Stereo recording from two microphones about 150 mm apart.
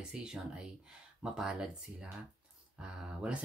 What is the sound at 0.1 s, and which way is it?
Speech, 5° right (ahead or behind).